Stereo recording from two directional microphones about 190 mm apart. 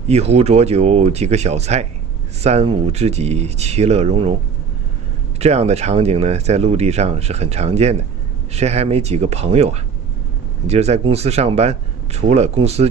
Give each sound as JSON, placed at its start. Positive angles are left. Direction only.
{"t": 0.1, "sound": "speech", "side_deg": -35}
{"t": 5.4, "sound": "speech", "side_deg": -35}